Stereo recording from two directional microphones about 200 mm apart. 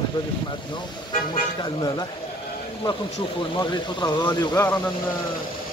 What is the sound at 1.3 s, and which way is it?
Speech, 20° left (ahead or behind).